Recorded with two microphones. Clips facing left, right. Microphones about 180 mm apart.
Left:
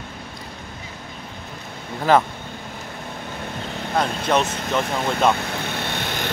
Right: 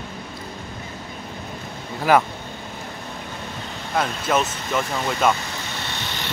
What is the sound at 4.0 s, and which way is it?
Speech, 5° right (ahead or behind).